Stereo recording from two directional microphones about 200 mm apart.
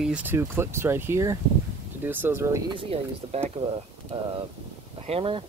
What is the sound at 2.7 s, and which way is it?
Speech, 25° right (ahead or behind).